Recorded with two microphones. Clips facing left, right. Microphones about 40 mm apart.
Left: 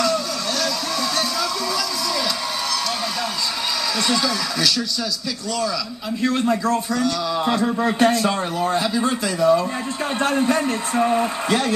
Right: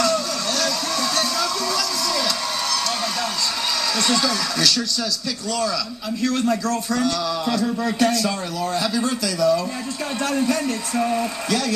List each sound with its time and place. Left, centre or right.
0.0 s music: centre
4.0 s speech: centre
6.2 s speech: left